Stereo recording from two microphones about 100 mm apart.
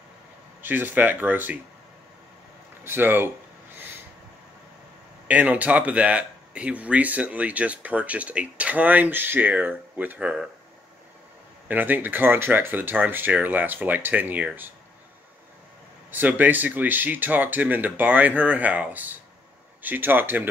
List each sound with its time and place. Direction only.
0.6 s speech: 20° right (ahead or behind)
2.8 s speech: 20° right (ahead or behind)
5.3 s speech: 15° right (ahead or behind)
11.6 s speech: 20° right (ahead or behind)
16.1 s speech: 15° right (ahead or behind)